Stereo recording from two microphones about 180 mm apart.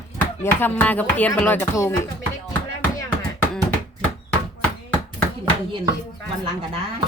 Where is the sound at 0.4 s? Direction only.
10° left (ahead or behind).